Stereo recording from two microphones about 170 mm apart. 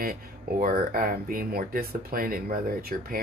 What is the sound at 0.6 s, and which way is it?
Speech, 55° right (ahead or behind).